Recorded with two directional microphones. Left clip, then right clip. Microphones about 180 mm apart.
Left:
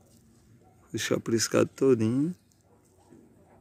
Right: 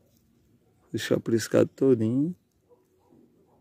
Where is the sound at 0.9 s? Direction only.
30° right (ahead or behind).